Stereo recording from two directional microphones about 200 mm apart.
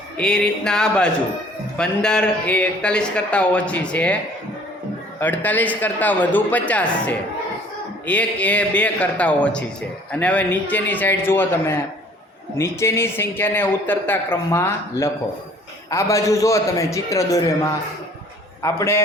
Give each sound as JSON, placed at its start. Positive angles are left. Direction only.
{"t": 0.2, "sound": "speech", "side_deg": 5}
{"t": 5.2, "sound": "a man's voice", "side_deg": 10}